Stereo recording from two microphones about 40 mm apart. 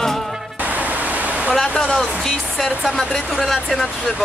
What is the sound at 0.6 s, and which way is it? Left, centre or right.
Pink noise, right.